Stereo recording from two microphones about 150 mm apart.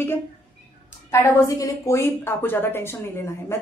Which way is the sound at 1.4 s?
20° left (ahead or behind).